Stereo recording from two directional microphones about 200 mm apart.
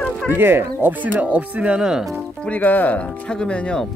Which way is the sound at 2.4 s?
10° left (ahead or behind).